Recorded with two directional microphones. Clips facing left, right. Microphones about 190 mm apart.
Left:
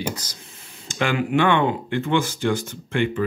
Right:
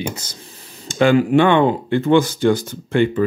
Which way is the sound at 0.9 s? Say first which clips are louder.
Right 8 dB; 35° right (ahead or behind).